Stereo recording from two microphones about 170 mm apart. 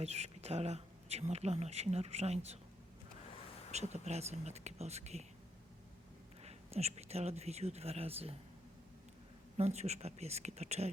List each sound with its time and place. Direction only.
0.0 s speech: 40° right (ahead or behind)
3.7 s speech: 40° right (ahead or behind)
6.4 s speech: 40° right (ahead or behind)
9.6 s speech: 40° right (ahead or behind)